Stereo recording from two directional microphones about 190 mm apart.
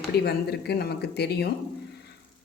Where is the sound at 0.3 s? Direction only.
60° left (ahead or behind).